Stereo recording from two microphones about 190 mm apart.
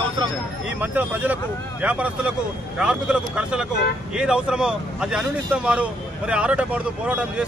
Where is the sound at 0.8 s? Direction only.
10° right (ahead or behind).